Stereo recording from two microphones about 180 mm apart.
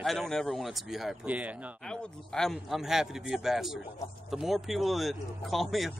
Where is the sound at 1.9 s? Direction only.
5° left (ahead or behind).